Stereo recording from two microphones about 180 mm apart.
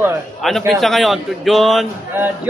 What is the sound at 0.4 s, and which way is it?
A man's voice, centre (ahead or behind).